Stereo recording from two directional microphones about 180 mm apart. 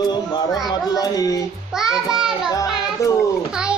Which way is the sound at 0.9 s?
20° left (ahead or behind).